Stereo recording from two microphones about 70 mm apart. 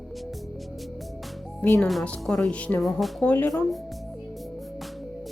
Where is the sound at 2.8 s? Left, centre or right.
Centre.